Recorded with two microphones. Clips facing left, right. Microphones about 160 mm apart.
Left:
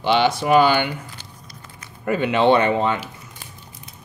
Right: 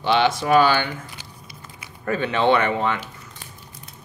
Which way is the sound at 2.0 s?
15° left (ahead or behind).